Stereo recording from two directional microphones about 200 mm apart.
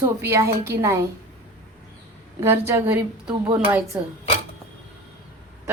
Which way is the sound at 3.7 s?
5° right (ahead or behind).